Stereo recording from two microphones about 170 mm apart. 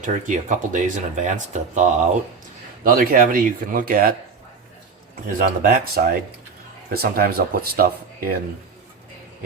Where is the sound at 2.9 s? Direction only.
55° right (ahead or behind).